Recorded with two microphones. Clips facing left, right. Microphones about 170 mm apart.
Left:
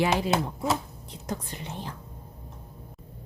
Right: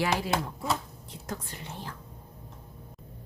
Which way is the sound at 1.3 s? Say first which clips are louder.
Left 4 dB; 20° left (ahead or behind).